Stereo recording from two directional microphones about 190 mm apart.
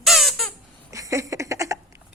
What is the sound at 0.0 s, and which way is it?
Squeak, centre (ahead or behind).